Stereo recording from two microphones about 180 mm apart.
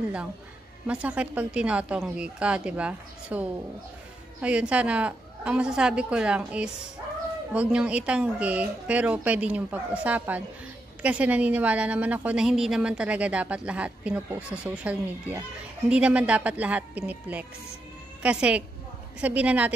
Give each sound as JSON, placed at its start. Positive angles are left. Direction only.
{"t": 0.8, "sound": "a woman's voice", "side_deg": -5}